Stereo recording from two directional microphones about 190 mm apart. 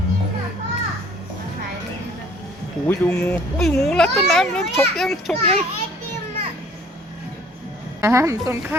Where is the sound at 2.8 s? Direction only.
10° left (ahead or behind).